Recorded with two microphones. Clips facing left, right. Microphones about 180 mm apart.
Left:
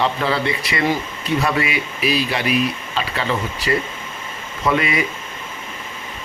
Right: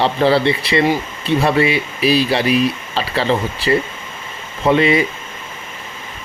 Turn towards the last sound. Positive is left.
turn(degrees=-30)  # may be behind; listen again after turning